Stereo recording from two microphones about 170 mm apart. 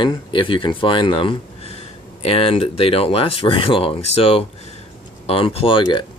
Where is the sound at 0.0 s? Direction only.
30° left (ahead or behind).